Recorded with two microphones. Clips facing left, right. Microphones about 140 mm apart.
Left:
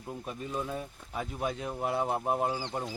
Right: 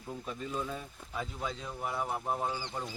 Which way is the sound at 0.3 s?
15° left (ahead or behind).